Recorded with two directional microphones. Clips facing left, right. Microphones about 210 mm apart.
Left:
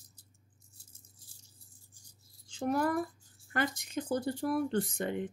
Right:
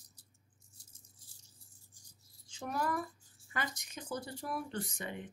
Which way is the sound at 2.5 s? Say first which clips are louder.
Left 6 dB; 55° left (ahead or behind).